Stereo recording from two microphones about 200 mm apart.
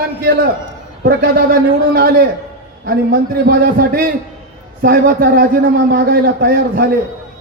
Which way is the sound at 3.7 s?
45° right (ahead or behind).